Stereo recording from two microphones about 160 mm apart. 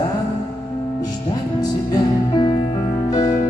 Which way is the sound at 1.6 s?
25° left (ahead or behind).